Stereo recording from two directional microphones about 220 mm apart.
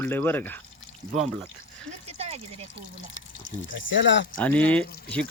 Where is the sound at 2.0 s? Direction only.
30° right (ahead or behind).